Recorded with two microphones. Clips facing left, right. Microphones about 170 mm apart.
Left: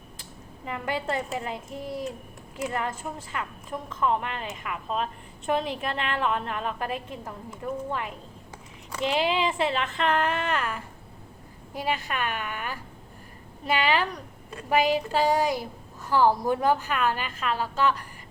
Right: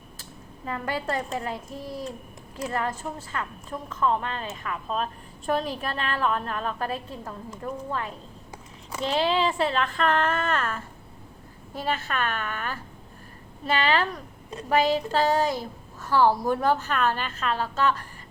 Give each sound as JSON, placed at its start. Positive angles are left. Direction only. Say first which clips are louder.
{"t": 0.6, "sound": "speech", "louder": "right 1 dB", "side_deg": 20}
{"t": 4.0, "sound": "a woman's voice", "louder": "right 1 dB", "side_deg": 20}
{"t": 4.6, "sound": "speech", "louder": "even", "side_deg": -40}
{"t": 5.5, "sound": "speech", "louder": "even", "side_deg": 20}
{"t": 6.7, "sound": "speech", "louder": "right 1 dB", "side_deg": -40}
{"t": 6.9, "sound": "a woman's voice", "louder": "even", "side_deg": 15}
{"t": 7.5, "sound": "speech", "louder": "left 1 dB", "side_deg": -35}
{"t": 9.2, "sound": "a woman's voice", "louder": "right 4 dB", "side_deg": 15}